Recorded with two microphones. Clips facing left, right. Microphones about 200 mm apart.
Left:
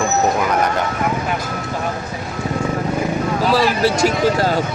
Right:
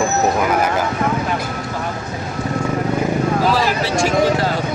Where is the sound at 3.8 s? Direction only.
40° left (ahead or behind).